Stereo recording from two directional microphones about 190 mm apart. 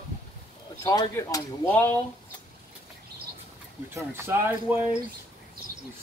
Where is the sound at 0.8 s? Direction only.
15° left (ahead or behind).